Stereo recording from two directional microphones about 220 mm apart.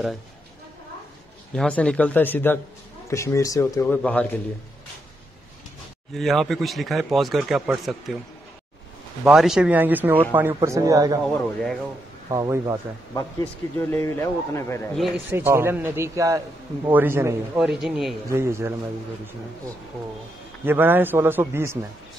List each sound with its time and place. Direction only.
1.5 s a man's voice: 5° left (ahead or behind)
6.1 s speech: centre (ahead or behind)
9.2 s a man's voice: centre (ahead or behind)
12.3 s a man's voice: 15° right (ahead or behind)
13.1 s a man's voice: 10° left (ahead or behind)
15.0 s a man's voice: 5° right (ahead or behind)
17.6 s speech: centre (ahead or behind)
18.3 s a man's voice: 10° right (ahead or behind)
20.6 s a man's voice: 10° right (ahead or behind)